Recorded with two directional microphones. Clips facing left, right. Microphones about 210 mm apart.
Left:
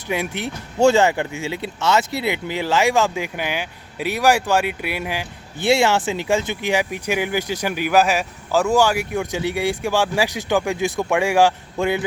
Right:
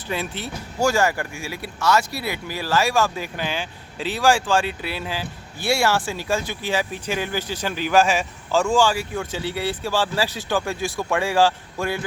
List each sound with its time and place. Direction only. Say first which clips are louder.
0.1 s speech: left 4 dB; 15° left (ahead or behind)
9.0 s speech: left 4 dB; 15° left (ahead or behind)